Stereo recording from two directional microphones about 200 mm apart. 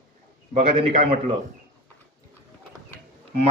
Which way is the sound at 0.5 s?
25° right (ahead or behind).